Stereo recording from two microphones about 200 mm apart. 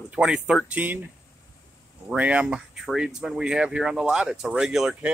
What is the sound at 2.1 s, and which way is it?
Speech, 5° right (ahead or behind).